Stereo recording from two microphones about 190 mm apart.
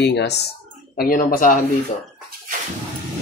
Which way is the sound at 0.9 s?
45° left (ahead or behind).